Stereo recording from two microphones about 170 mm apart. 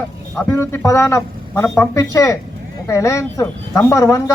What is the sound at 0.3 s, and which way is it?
A man's voice, 15° left (ahead or behind).